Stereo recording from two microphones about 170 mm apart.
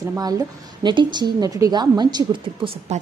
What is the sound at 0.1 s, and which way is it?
Speech, 20° right (ahead or behind).